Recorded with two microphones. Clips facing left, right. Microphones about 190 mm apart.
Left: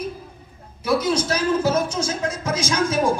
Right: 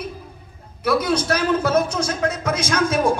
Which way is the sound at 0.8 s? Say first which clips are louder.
Right 1 dB; 60° right (ahead or behind).